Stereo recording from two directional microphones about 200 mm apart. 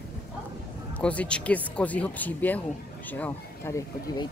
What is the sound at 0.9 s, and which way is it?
Speech, 5° left (ahead or behind).